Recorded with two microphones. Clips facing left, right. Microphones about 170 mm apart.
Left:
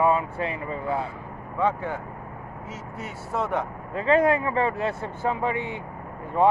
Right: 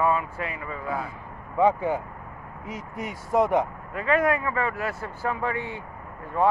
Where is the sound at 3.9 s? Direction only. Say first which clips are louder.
Left 3 dB; 30° left (ahead or behind).